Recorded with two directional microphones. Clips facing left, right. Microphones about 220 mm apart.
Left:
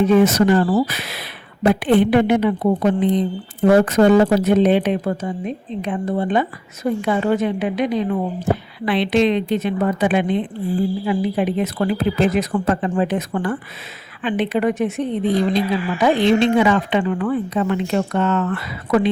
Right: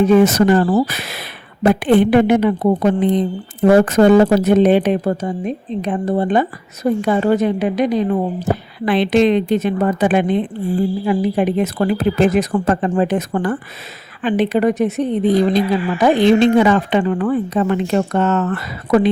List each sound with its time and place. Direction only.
0.0 s speech: 45° right (ahead or behind)